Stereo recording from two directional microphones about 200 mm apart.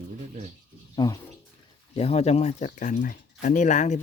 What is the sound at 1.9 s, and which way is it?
Speech, 30° left (ahead or behind).